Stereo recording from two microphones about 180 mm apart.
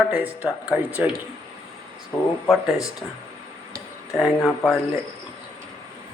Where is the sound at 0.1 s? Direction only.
10° right (ahead or behind).